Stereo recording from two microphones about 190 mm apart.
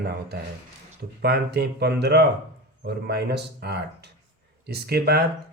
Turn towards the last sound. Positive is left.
turn(degrees=-55)  # may be behind; listen again after turning